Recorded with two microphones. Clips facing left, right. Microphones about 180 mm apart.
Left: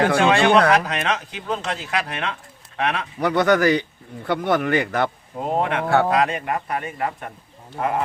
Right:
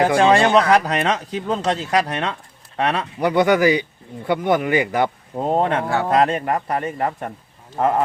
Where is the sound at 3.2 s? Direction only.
10° right (ahead or behind).